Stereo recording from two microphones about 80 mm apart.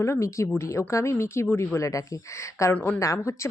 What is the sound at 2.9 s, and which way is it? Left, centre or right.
Speech, left.